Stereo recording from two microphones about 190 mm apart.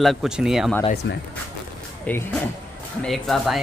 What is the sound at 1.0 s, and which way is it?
Speech, 70° left (ahead or behind).